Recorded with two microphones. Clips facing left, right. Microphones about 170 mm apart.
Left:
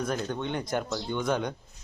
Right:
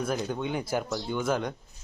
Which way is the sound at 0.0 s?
5° right (ahead or behind).